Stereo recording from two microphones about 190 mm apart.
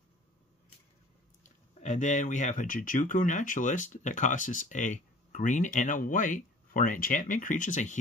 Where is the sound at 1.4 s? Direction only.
40° left (ahead or behind).